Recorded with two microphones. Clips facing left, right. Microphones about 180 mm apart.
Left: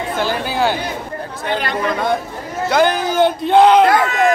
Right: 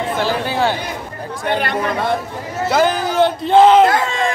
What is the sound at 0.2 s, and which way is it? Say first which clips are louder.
Speech: left 1 dB; centre (ahead or behind).